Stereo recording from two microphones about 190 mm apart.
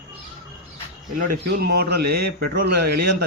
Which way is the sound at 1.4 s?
55° right (ahead or behind).